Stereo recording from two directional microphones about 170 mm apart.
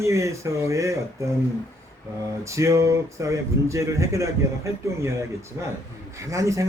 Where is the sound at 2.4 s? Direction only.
15° right (ahead or behind).